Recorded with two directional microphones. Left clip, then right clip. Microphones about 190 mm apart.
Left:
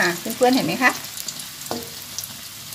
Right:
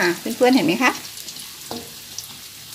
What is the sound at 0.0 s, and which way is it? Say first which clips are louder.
Speech: right 1 dB; 45° right (ahead or behind).